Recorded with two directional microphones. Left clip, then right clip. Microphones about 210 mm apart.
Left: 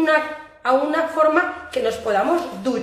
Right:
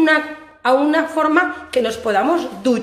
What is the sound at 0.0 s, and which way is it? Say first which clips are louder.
A woman's voice: right 3 dB; 40° right (ahead or behind).